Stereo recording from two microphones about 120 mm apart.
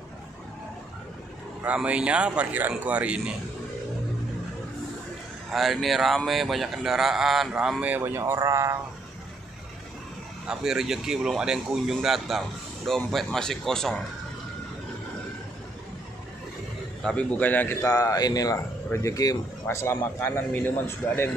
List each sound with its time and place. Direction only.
1.6 s a man's voice: 10° right (ahead or behind)
5.5 s speech: centre (ahead or behind)
7.9 s speech: 20° right (ahead or behind)
10.4 s speech: 5° right (ahead or behind)
17.0 s a man's voice: 10° left (ahead or behind)
17.8 s a man's voice: 30° left (ahead or behind)